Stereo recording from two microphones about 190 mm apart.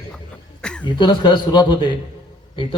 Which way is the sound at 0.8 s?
25° left (ahead or behind).